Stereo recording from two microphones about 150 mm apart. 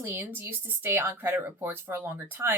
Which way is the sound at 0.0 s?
15° right (ahead or behind).